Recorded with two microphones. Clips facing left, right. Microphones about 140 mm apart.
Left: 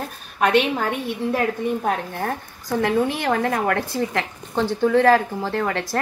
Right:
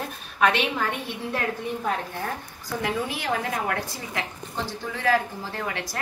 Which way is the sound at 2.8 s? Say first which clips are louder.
Left 8 dB; 50° left (ahead or behind).